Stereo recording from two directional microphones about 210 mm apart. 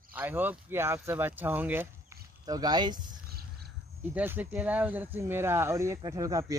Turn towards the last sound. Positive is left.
turn(degrees=-15)  # may be behind; listen again after turning